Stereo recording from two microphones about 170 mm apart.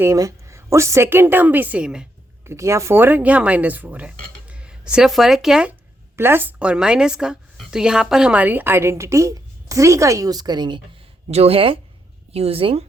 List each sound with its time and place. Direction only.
0.0 s a woman's voice: 20° right (ahead or behind)
2.5 s a woman's voice: 15° right (ahead or behind)
11.3 s speech: 35° right (ahead or behind)